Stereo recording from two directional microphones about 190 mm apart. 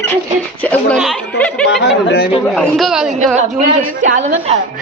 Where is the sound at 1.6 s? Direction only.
60° left (ahead or behind).